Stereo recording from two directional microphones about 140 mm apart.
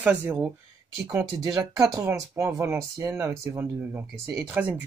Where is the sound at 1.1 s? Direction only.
25° right (ahead or behind).